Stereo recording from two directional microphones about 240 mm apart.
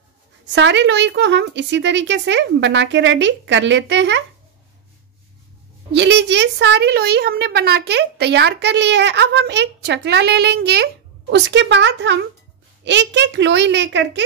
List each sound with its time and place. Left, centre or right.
0.5 s a woman's voice: right
5.9 s a woman's voice: right